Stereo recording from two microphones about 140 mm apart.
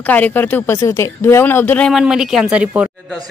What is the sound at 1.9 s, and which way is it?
Speech, 5° right (ahead or behind).